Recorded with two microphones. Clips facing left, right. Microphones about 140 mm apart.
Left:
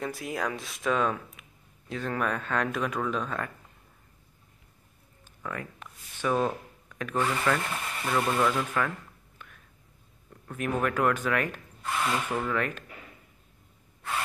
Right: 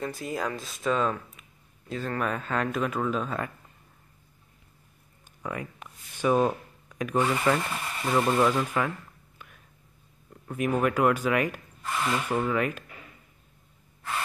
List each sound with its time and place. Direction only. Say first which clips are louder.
0.0 s speech: right 1 dB; centre (ahead or behind)
5.4 s speech: right 2 dB; 15° right (ahead or behind)
10.4 s speech: right 3 dB; 10° right (ahead or behind)